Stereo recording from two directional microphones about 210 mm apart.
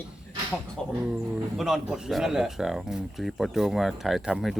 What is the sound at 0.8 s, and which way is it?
Speech, 5° left (ahead or behind).